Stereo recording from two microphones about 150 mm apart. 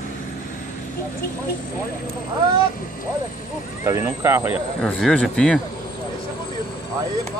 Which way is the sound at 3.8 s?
20° right (ahead or behind).